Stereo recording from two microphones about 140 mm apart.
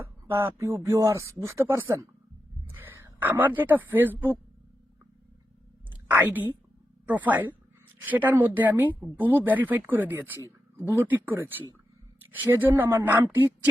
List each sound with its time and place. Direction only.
0.0 s speech: 15° right (ahead or behind)
5.9 s a sound: 15° right (ahead or behind)
7.0 s speech: 10° right (ahead or behind)